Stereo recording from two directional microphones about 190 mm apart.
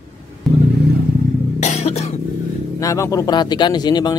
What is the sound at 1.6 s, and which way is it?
Cough, 35° left (ahead or behind).